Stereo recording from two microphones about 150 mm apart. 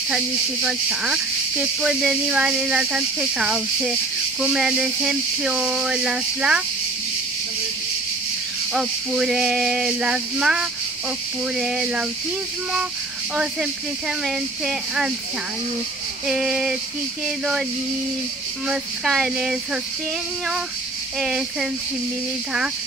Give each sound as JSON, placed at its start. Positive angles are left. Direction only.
{"t": 0.1, "sound": "speech", "side_deg": -5}
{"t": 8.7, "sound": "speech", "side_deg": -5}
{"t": 13.4, "sound": "speech", "side_deg": -5}
{"t": 16.3, "sound": "speech", "side_deg": -5}
{"t": 18.7, "sound": "speech", "side_deg": -5}
{"t": 21.2, "sound": "speech", "side_deg": -5}